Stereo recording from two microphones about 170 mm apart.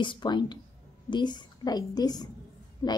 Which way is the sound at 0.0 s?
25° left (ahead or behind).